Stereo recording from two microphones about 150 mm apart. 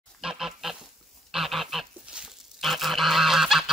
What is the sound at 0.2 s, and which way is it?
Goose, 5° right (ahead or behind).